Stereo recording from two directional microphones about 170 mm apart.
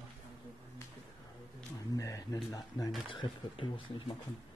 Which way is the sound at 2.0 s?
20° left (ahead or behind).